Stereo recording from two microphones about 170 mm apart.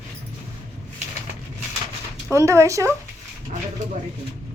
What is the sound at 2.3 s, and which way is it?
Speech, 20° right (ahead or behind).